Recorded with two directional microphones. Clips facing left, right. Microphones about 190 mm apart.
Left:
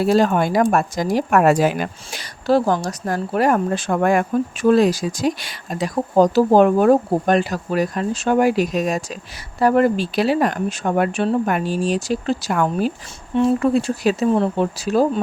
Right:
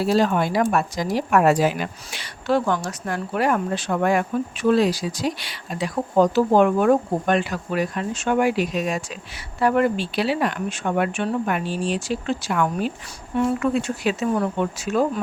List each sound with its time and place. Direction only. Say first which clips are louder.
0.0 s speech: left 3 dB; 50° left (ahead or behind)
2.1 s speech: left 4 dB; 35° left (ahead or behind)
12.6 s speech: left 4 dB; 30° left (ahead or behind)
14.3 s speech: left 4 dB; 25° left (ahead or behind)